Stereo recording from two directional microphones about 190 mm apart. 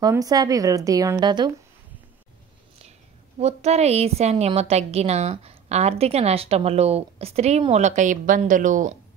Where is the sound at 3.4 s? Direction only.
35° right (ahead or behind).